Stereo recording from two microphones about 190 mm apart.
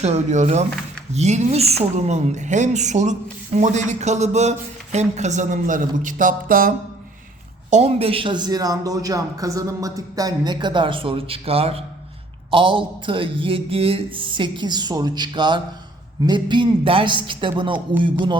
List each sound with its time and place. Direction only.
0.0 s a woman's voice: 35° right (ahead or behind)
7.7 s speech: 35° right (ahead or behind)